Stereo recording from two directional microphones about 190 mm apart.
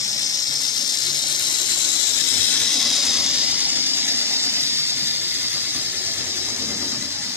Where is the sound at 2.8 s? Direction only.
Centre (ahead or behind).